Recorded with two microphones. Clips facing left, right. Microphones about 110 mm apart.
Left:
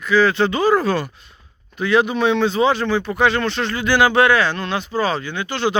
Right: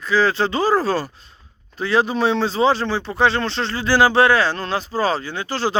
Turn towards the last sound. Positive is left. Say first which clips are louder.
# left 1 dB
turn(degrees=-35)  # may be behind; listen again after turning